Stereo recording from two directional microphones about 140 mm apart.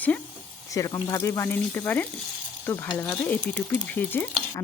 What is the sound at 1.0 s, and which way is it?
Speech, 20° left (ahead or behind).